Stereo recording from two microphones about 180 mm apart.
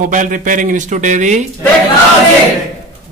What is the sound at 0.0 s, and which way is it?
Speech, 45° right (ahead or behind).